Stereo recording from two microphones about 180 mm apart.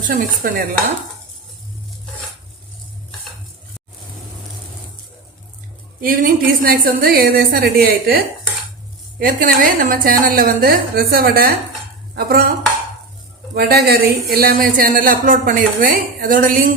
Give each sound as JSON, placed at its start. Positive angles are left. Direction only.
{"t": 0.1, "sound": "speech", "side_deg": -50}
{"t": 6.0, "sound": "a woman's voice", "side_deg": -50}
{"t": 13.6, "sound": "speech", "side_deg": -60}